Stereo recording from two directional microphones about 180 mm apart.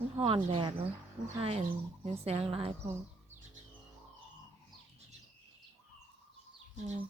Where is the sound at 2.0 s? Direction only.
35° right (ahead or behind).